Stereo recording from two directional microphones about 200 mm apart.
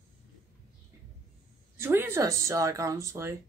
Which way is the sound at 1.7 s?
10° right (ahead or behind).